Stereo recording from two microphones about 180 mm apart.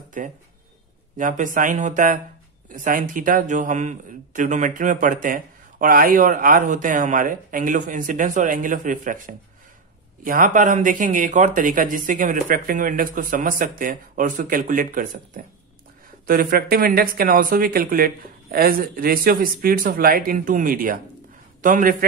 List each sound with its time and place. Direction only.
0.2 s a man's voice: 45° right (ahead or behind)